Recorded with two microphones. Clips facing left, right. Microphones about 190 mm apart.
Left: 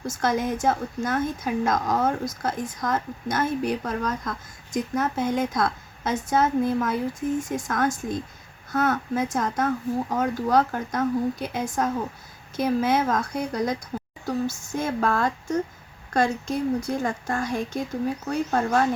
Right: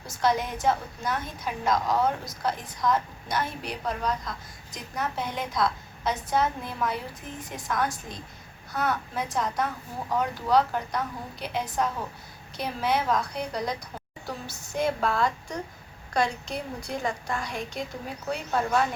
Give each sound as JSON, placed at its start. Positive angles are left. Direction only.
{"t": 0.1, "sound": "a woman's voice", "side_deg": 50}